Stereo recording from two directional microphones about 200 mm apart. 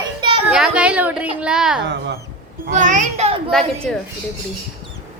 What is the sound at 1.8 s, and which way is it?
Speech, 60° right (ahead or behind).